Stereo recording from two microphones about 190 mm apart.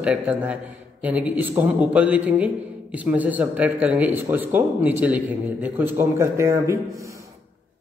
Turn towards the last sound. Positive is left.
turn(degrees=-15)  # may be behind; listen again after turning